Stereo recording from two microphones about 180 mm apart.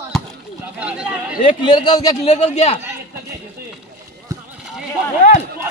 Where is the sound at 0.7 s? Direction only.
5° right (ahead or behind).